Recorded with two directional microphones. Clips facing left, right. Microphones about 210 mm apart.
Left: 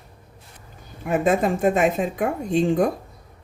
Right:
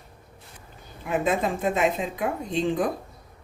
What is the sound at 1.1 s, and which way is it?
Speech, 50° left (ahead or behind).